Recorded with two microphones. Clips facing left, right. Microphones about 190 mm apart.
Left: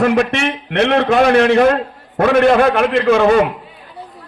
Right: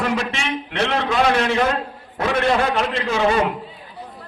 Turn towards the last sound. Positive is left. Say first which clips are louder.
# left 8 dB
turn(degrees=55)  # may be behind; listen again after turning